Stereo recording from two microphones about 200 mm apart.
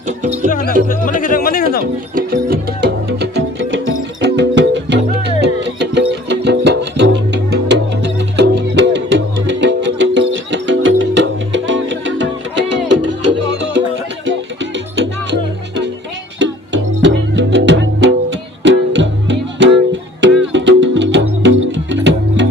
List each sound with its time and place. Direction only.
0.9 s music: 40° left (ahead or behind)
1.8 s music: 45° right (ahead or behind); by 22.4 s 65° right (ahead or behind)